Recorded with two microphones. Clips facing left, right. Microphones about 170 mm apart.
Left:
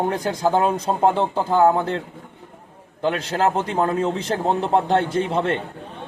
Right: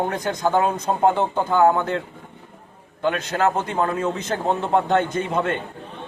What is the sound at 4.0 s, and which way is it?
Speech, 35° left (ahead or behind).